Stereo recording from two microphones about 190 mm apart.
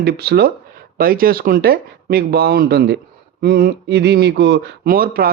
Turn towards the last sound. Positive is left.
turn(degrees=-50)  # may be behind; listen again after turning